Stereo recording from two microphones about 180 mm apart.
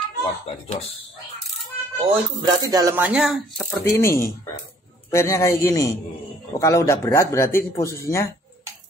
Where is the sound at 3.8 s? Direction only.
15° left (ahead or behind).